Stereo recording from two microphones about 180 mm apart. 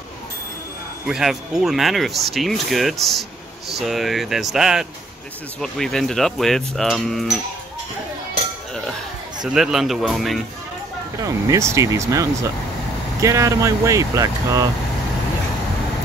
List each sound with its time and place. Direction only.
1.0 s speech: centre (ahead or behind)
9.4 s speech: 5° right (ahead or behind)
11.1 s speech: 15° right (ahead or behind)